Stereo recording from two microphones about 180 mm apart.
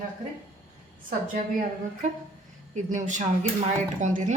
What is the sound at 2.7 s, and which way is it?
Speech, 45° right (ahead or behind).